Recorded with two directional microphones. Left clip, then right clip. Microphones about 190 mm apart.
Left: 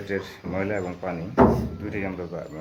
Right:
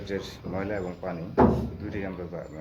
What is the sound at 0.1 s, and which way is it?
Speech, centre (ahead or behind).